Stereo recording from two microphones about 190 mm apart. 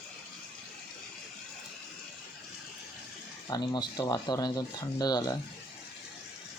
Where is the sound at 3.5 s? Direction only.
20° left (ahead or behind).